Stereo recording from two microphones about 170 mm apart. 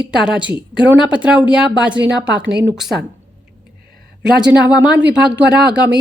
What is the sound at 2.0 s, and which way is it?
Speech, 90° right.